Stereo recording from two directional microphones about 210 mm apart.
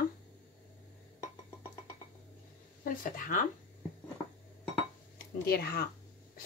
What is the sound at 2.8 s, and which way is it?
Speech, 40° left (ahead or behind).